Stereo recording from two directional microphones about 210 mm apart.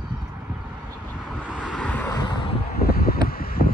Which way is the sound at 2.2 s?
25° left (ahead or behind).